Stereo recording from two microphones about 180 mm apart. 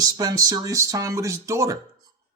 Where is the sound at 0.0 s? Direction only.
20° right (ahead or behind).